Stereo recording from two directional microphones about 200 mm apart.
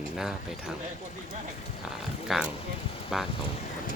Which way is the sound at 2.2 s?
Centre (ahead or behind).